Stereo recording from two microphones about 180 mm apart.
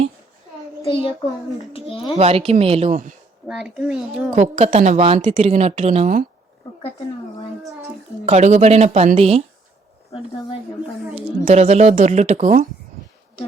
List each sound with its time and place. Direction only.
0.9 s a child's voice: 30° left (ahead or behind)
2.1 s a woman's voice: 35° right (ahead or behind)
3.4 s a child's voice: 5° right (ahead or behind)
4.4 s a woman's voice: 35° right (ahead or behind)
8.3 s a woman's voice: 40° right (ahead or behind)
11.4 s a woman's voice: 40° right (ahead or behind)